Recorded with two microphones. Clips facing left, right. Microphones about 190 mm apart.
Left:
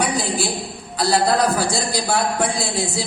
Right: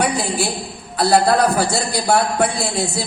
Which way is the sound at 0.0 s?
60° right (ahead or behind).